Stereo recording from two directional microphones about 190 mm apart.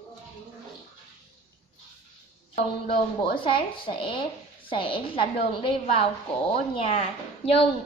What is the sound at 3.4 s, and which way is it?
Speech, 25° left (ahead or behind).